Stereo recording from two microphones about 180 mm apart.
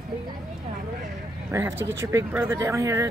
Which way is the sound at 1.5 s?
15° right (ahead or behind).